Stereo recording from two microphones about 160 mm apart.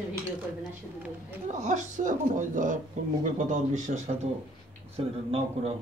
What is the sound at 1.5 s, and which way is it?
A man's voice, 50° right (ahead or behind).